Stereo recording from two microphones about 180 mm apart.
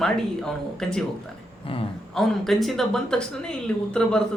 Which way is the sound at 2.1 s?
Centre (ahead or behind).